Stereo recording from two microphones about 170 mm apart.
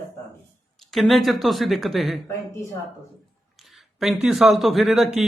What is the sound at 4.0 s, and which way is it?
Speech, centre (ahead or behind).